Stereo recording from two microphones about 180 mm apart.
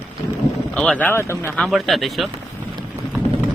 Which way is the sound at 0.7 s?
5° left (ahead or behind).